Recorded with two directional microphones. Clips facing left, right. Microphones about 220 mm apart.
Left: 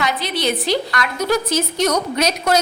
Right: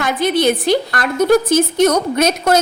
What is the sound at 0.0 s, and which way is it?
A woman's voice, 50° right (ahead or behind).